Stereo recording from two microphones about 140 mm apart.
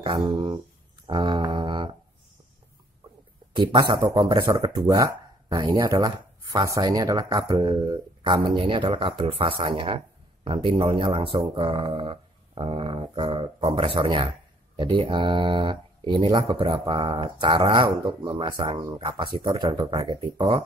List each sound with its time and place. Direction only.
0.0 s speech: 35° right (ahead or behind)
1.0 s a sound: 35° right (ahead or behind)
3.5 s speech: 35° right (ahead or behind)